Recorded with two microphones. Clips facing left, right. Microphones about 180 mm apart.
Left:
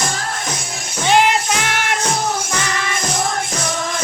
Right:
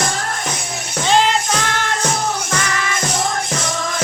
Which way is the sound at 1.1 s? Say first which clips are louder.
Left 1 dB; 15° left (ahead or behind).